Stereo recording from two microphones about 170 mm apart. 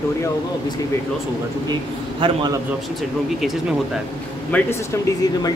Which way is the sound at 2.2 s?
25° right (ahead or behind).